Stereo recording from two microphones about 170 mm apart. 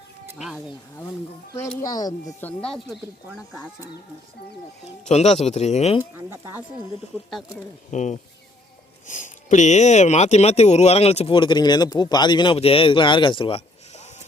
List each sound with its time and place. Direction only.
0.3 s speech: centre (ahead or behind)
1.8 s speech: 20° left (ahead or behind)
2.9 s speech: centre (ahead or behind)
5.0 s speech: 40° left (ahead or behind)
6.0 s speech: 15° right (ahead or behind)
7.3 s speech: centre (ahead or behind)
7.9 s speech: 45° left (ahead or behind)